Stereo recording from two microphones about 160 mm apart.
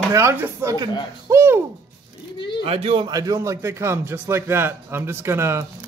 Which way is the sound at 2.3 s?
30° left (ahead or behind).